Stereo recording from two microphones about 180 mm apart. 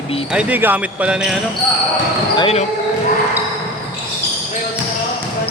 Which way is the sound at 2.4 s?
35° left (ahead or behind).